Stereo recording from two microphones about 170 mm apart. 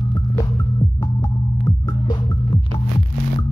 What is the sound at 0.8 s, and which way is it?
Music, 20° left (ahead or behind).